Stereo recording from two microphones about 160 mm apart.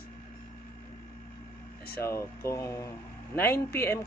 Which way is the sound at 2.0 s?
15° left (ahead or behind).